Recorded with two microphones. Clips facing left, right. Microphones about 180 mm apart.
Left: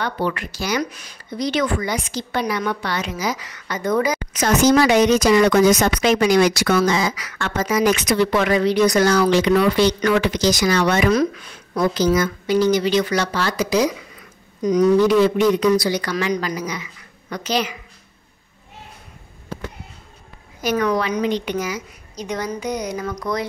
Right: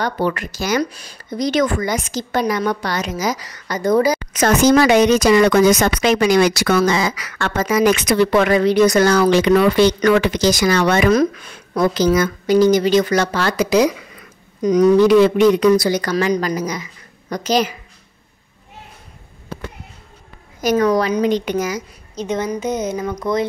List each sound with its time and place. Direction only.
0.0 s a woman's voice: 45° right (ahead or behind)
0.8 s a woman's voice: 35° right (ahead or behind)
4.3 s speech: 55° right (ahead or behind)
11.7 s speech: 75° right (ahead or behind)
12.4 s a woman's voice: 45° right (ahead or behind); by 13.8 s 65° right (ahead or behind)
14.7 s speech: 75° right (ahead or behind)
15.7 s a woman's voice: 45° right (ahead or behind)
20.7 s a woman's voice: 35° right (ahead or behind)
22.1 s a woman's voice: 25° right (ahead or behind)